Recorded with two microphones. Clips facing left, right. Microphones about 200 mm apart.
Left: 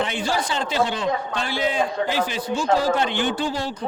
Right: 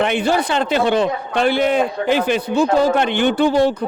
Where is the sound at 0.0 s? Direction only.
60° right (ahead or behind).